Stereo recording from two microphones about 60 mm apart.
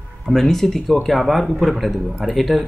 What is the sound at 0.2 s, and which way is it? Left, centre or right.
Speech, centre.